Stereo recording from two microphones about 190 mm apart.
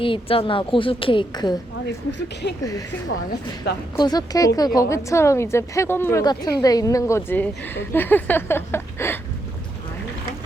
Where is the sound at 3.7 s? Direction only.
60° left (ahead or behind).